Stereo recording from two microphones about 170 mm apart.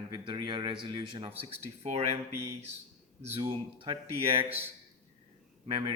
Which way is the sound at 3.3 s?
30° right (ahead or behind).